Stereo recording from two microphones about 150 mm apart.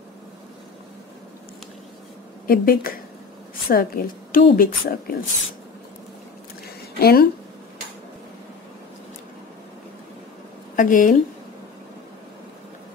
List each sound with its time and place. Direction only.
2.4 s a woman's voice: 75° left (ahead or behind)
7.0 s speech: 90° left
10.8 s a woman's voice: 60° left (ahead or behind)